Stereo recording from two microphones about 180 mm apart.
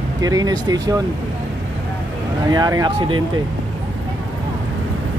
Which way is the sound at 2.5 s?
20° right (ahead or behind).